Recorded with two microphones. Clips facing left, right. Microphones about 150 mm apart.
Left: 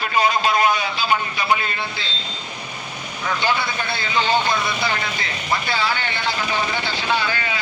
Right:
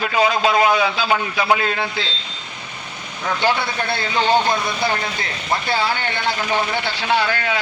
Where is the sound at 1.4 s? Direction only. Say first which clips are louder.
Right 2 dB; 90° right.